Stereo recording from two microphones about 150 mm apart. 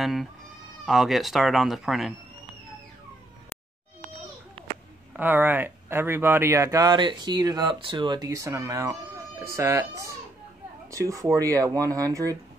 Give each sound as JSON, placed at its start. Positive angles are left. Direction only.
{"t": 0.0, "sound": "speech", "side_deg": 0}
{"t": 5.1, "sound": "speech", "side_deg": -15}